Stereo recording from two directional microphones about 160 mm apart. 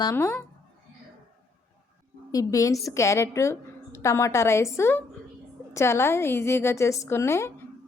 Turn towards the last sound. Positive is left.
turn(degrees=15)  # may be behind; listen again after turning